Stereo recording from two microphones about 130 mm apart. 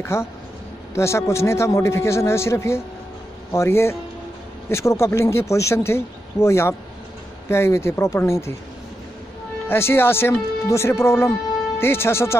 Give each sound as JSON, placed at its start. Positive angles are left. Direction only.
{"t": 0.0, "sound": "speech", "side_deg": 20}
{"t": 9.7, "sound": "speech", "side_deg": 20}